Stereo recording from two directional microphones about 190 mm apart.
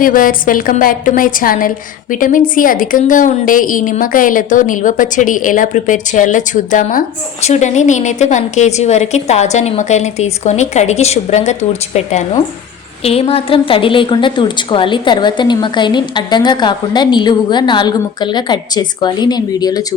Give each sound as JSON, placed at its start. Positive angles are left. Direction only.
{"t": 0.0, "sound": "a woman's voice", "side_deg": 45}